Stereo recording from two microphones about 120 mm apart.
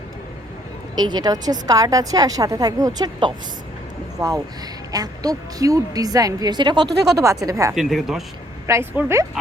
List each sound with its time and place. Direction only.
0.9 s a woman's voice: 35° right (ahead or behind)
7.2 s a woman's voice: 30° right (ahead or behind)
7.8 s speech: centre (ahead or behind)
8.6 s a woman's voice: 20° right (ahead or behind)